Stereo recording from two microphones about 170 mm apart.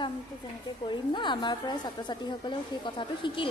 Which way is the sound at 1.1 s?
25° left (ahead or behind).